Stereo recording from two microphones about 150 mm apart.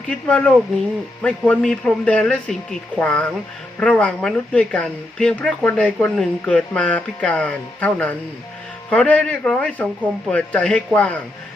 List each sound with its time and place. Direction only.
0.1 s speech: 5° left (ahead or behind)